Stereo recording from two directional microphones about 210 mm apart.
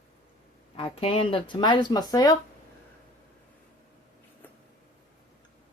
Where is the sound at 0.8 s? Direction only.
25° left (ahead or behind).